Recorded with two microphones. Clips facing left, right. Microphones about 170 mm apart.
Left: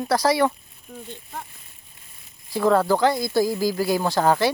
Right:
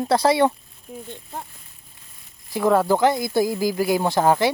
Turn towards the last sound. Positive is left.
turn(degrees=-20)  # may be behind; listen again after turning